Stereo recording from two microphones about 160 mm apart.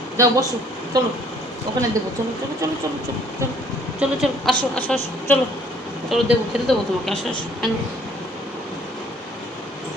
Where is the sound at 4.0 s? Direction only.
Centre (ahead or behind).